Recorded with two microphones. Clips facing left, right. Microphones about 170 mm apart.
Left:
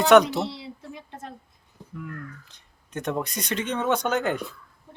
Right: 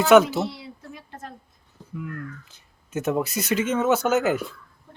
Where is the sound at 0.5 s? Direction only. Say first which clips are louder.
Left 2 dB; 25° left (ahead or behind).